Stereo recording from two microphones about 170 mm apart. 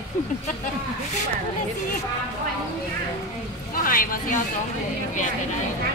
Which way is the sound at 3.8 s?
55° left (ahead or behind).